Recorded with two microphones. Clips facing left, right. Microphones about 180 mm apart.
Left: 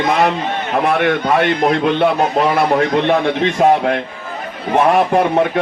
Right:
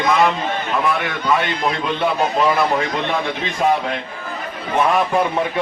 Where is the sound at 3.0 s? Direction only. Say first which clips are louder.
Left 8 dB; 65° left (ahead or behind).